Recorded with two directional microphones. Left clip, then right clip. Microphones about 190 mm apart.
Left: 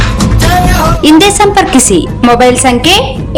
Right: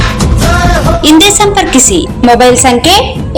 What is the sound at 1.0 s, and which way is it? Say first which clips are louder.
A woman's voice: even; 40° left (ahead or behind).